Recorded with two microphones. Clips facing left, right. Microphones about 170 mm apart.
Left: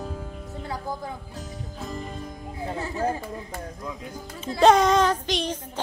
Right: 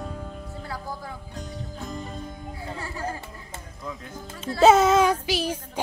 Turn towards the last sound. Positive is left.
turn(degrees=-10)  # may be behind; listen again after turning